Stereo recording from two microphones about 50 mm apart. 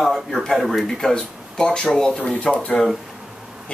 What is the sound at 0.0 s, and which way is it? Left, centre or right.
Speech, centre.